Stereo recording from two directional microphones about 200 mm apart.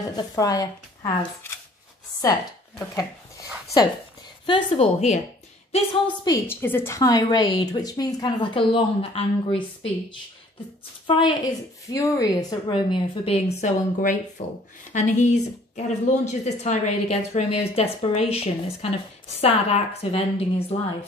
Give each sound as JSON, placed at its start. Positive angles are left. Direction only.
{"t": 0.1, "sound": "speech", "side_deg": 20}
{"t": 4.5, "sound": "a woman's voice", "side_deg": 25}
{"t": 6.2, "sound": "a woman's voice", "side_deg": 15}
{"t": 11.1, "sound": "a woman's voice", "side_deg": 25}